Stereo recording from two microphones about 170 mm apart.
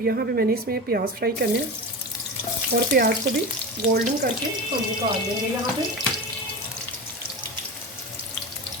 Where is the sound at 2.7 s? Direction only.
60° right (ahead or behind).